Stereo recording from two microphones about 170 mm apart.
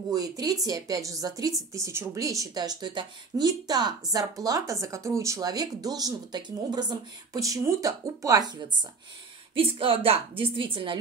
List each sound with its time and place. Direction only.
0.1 s speech: 20° right (ahead or behind)
9.6 s a woman's voice: 30° right (ahead or behind)